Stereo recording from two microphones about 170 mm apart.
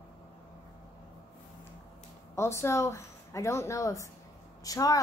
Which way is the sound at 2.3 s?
15° left (ahead or behind).